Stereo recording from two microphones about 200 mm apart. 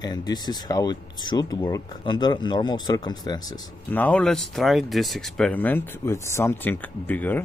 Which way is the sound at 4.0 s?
5° left (ahead or behind).